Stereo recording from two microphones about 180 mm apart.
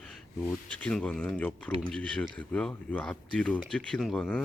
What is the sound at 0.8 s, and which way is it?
Speech, 5° left (ahead or behind).